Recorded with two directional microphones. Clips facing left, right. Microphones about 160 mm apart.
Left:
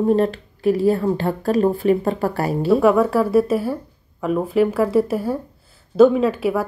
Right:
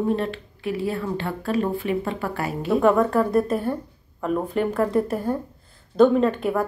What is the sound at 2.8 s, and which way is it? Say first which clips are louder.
Speech: right 1 dB; 5° left (ahead or behind).